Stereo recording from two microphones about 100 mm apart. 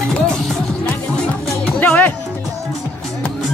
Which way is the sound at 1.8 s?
15° left (ahead or behind).